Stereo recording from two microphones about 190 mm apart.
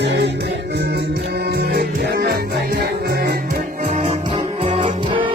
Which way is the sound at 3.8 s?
40° right (ahead or behind).